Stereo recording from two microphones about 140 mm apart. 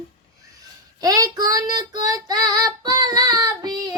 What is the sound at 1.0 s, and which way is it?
Child singing, 25° right (ahead or behind).